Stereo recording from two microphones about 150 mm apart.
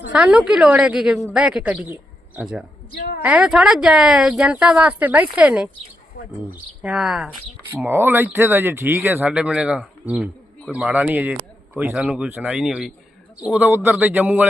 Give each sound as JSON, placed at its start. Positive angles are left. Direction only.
{"t": 0.1, "sound": "a man's voice", "side_deg": -5}
{"t": 2.9, "sound": "a woman's voice", "side_deg": 75}
{"t": 3.2, "sound": "a woman's voice", "side_deg": -5}
{"t": 6.2, "sound": "bird", "side_deg": 80}
{"t": 6.5, "sound": "a woman's voice", "side_deg": -5}
{"t": 7.9, "sound": "a man's voice", "side_deg": -15}